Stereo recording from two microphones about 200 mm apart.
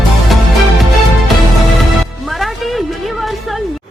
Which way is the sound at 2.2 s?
Centre (ahead or behind).